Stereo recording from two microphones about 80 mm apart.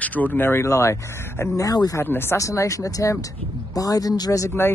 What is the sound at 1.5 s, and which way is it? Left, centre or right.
Speech, left.